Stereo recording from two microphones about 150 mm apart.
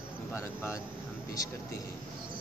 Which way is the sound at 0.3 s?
20° left (ahead or behind).